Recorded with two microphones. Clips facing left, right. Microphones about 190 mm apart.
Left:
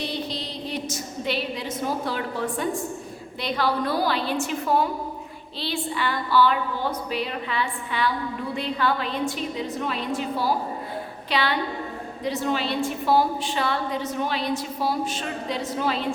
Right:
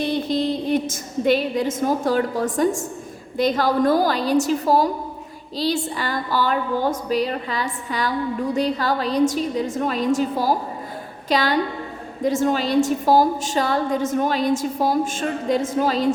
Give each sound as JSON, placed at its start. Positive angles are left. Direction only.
{"t": 0.0, "sound": "a woman's voice", "side_deg": -50}